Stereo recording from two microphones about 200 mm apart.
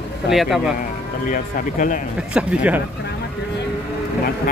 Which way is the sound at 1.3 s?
40° left (ahead or behind).